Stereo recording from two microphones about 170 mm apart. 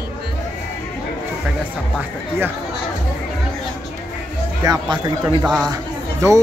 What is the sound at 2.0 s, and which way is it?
Speech, 10° right (ahead or behind).